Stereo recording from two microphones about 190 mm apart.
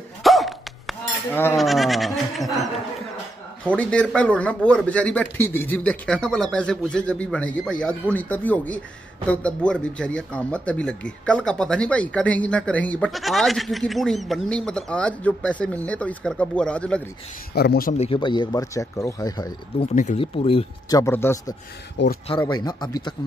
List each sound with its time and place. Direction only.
0.2 s dog: centre (ahead or behind)
1.3 s speech: 10° left (ahead or behind)
1.6 s speech: centre (ahead or behind)
17.6 s speech: 55° left (ahead or behind)
17.9 s speech: 30° left (ahead or behind)
21.0 s speech: 15° left (ahead or behind)
21.9 s speech: 60° left (ahead or behind)
22.5 s speech: 20° left (ahead or behind)